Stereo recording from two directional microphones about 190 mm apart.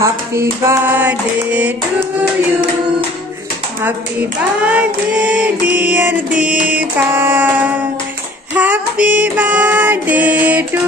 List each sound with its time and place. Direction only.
0.0 s speech: 15° right (ahead or behind)
3.8 s speech: 10° right (ahead or behind)